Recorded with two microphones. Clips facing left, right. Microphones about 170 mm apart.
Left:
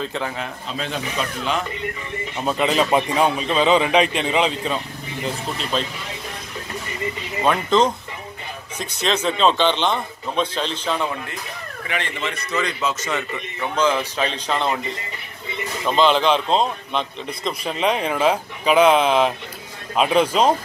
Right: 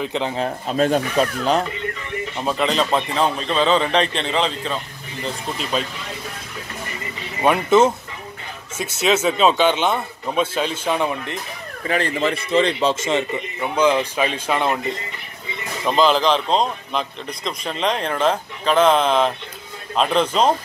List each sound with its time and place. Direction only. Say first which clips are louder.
0.0 s a man's voice: right 3 dB; 20° right (ahead or behind)
0.4 s speech: right 9 dB; 45° right (ahead or behind)
2.4 s a man's voice: left 1 dB; 5° left (ahead or behind)
5.2 s speech: even; 5° right (ahead or behind)
7.4 s speech: right 3 dB; 5° right (ahead or behind)
9.0 s speech: right 2 dB; 5° right (ahead or behind)
11.9 s a man's voice: right 7 dB; 35° right (ahead or behind)
13.6 s speech: right 2 dB; 15° right (ahead or behind)
15.8 s a man's voice: right 1 dB; centre (ahead or behind)